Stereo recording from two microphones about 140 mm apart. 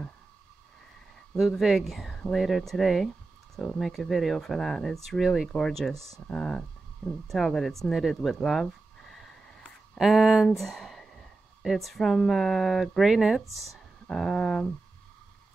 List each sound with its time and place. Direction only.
1.3 s speech: centre (ahead or behind)
9.9 s speech: centre (ahead or behind)